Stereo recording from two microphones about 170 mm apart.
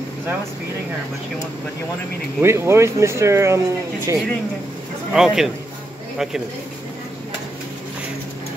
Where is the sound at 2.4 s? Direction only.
15° right (ahead or behind).